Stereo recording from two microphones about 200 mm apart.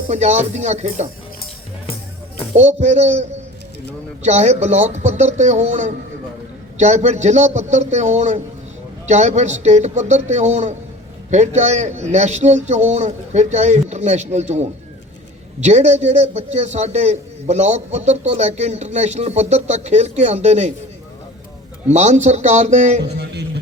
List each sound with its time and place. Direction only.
0.1 s a man's voice: 35° right (ahead or behind)
2.6 s a man's voice: 35° right (ahead or behind)
21.8 s a man's voice: 35° right (ahead or behind)
23.0 s music: 55° right (ahead or behind)